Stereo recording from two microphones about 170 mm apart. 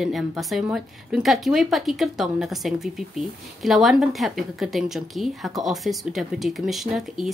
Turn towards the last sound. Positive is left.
turn(degrees=0)  # may be behind; listen again after turning